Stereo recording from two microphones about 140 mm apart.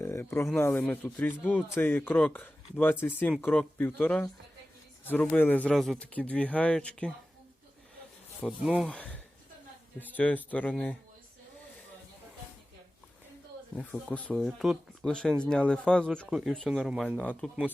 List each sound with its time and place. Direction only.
0.0 s a sound: 15° left (ahead or behind)
0.5 s speech: 15° left (ahead or behind)
5.7 s speech: centre (ahead or behind)
8.4 s speech: 5° right (ahead or behind)
8.9 s speech: 10° left (ahead or behind)
13.9 s speech: 10° left (ahead or behind)
17.2 s speech: 10° left (ahead or behind)